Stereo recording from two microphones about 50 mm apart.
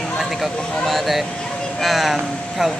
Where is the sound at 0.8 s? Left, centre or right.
Centre.